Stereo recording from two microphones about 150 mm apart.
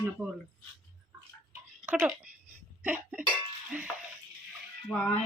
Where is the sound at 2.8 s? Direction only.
10° right (ahead or behind).